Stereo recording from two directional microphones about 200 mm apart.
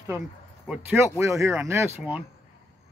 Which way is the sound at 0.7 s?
5° right (ahead or behind).